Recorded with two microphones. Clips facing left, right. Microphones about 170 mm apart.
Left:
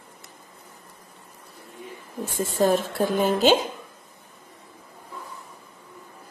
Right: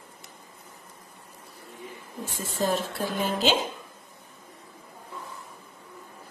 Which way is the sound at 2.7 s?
50° left (ahead or behind).